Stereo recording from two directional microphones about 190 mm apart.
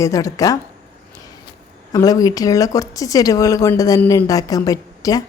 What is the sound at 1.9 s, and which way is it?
Speech, 20° left (ahead or behind).